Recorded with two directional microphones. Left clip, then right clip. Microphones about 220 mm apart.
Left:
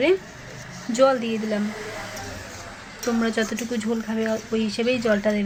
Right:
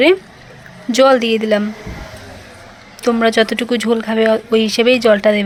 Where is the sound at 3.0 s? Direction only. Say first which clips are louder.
Right 11 dB; 45° right (ahead or behind).